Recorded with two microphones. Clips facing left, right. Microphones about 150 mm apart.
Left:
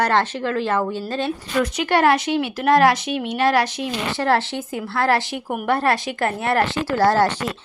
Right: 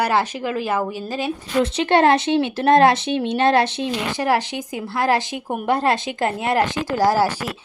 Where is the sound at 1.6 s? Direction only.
25° right (ahead or behind); by 7.5 s 10° right (ahead or behind).